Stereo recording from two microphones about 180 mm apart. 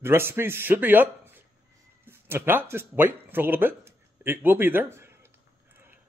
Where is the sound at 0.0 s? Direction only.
15° right (ahead or behind).